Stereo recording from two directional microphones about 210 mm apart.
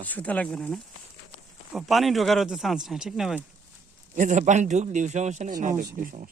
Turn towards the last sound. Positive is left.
turn(degrees=-40)  # may be behind; listen again after turning